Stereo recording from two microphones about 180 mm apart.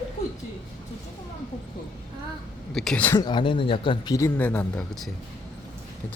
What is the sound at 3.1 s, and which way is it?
A man's voice, 25° left (ahead or behind).